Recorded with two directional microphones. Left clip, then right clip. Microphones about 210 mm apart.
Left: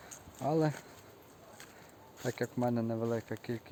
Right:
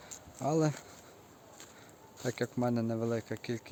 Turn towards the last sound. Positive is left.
turn(degrees=-10)  # may be behind; listen again after turning